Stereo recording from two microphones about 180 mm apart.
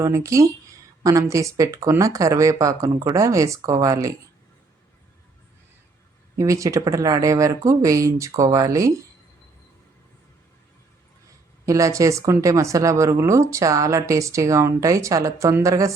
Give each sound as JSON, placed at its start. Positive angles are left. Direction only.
{"t": 0.0, "sound": "speech", "side_deg": -15}
{"t": 6.3, "sound": "speech", "side_deg": -15}
{"t": 11.6, "sound": "speech", "side_deg": -20}